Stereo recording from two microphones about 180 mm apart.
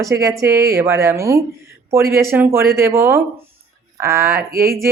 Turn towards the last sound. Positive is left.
turn(degrees=-15)  # may be behind; listen again after turning